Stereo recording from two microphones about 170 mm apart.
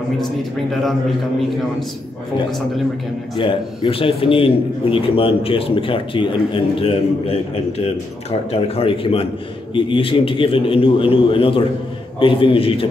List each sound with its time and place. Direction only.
0.2 s a man's voice: centre (ahead or behind)
3.3 s a man's voice: 30° left (ahead or behind)